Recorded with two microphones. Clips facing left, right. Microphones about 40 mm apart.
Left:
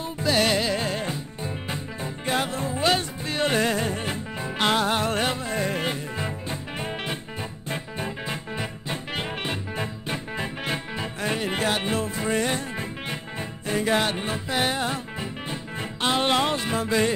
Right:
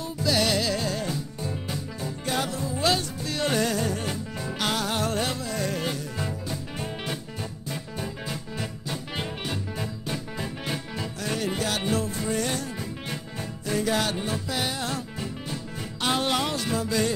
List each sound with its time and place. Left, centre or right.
0.0 s music: left